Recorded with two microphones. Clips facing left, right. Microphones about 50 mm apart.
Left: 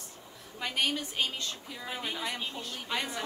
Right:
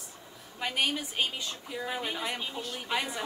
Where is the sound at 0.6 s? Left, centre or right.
Centre.